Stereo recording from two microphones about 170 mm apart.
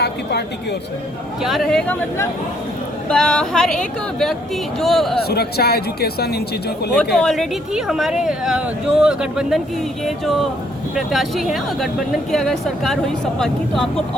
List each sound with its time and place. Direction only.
0.0 s a woman's voice: 75° left (ahead or behind)
1.4 s speech: centre (ahead or behind)
3.1 s speech: 5° left (ahead or behind)
5.3 s speech: 70° left (ahead or behind)
6.9 s speech: 5° left (ahead or behind)